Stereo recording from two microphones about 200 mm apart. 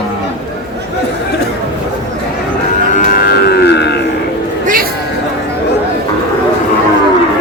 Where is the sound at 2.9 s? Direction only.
45° left (ahead or behind).